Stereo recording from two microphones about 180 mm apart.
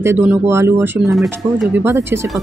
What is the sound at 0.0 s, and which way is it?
Speech, 15° right (ahead or behind).